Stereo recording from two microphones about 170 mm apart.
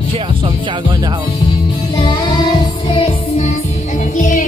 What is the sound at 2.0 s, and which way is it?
Music, 25° left (ahead or behind).